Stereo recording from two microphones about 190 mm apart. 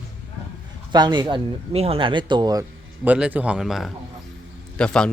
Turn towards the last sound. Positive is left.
turn(degrees=5)  # may be behind; listen again after turning